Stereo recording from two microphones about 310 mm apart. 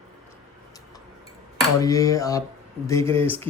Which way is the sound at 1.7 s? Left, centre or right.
Centre.